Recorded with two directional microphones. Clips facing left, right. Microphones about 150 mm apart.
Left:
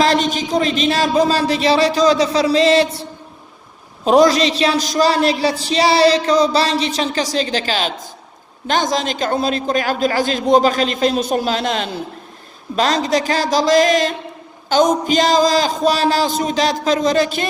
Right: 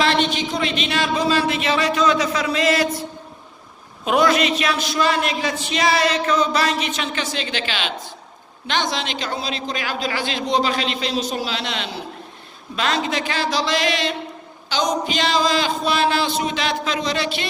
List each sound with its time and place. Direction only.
0.0 s a woman's voice: 40° left (ahead or behind)